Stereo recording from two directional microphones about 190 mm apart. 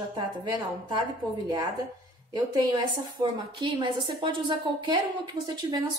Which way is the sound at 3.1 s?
25° right (ahead or behind).